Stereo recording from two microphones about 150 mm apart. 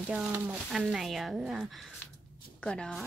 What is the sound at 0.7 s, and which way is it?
Speech, centre (ahead or behind).